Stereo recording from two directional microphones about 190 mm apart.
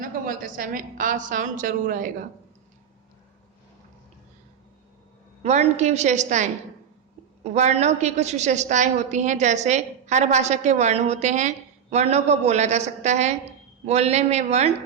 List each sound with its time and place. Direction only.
0.3 s a woman's voice: 45° right (ahead or behind)
5.4 s a woman's voice: 35° right (ahead or behind)